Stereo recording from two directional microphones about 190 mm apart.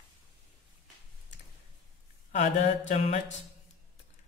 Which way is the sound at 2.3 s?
40° left (ahead or behind).